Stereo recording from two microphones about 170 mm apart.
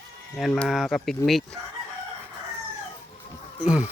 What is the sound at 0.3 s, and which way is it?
Speech, centre (ahead or behind).